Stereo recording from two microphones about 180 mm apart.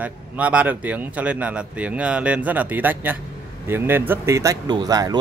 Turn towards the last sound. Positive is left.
turn(degrees=-20)  # may be behind; listen again after turning